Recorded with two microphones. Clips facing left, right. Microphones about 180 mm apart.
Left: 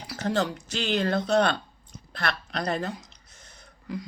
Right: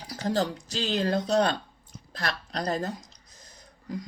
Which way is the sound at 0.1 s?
35° right (ahead or behind).